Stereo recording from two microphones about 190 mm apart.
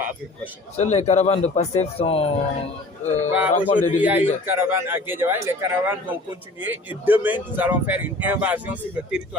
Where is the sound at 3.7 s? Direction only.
40° left (ahead or behind).